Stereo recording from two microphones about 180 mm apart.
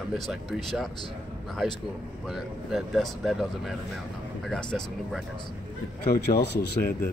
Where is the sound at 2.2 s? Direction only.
Centre (ahead or behind).